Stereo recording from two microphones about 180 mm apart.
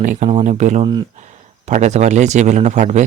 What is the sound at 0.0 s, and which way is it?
Speech, 45° right (ahead or behind).